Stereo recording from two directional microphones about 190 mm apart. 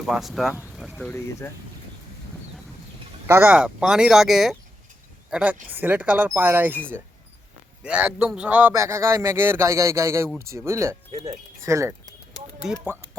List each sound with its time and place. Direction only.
0.0 s speech: centre (ahead or behind)
3.2 s a man's voice: 10° right (ahead or behind)
7.9 s a man's voice: 5° right (ahead or behind)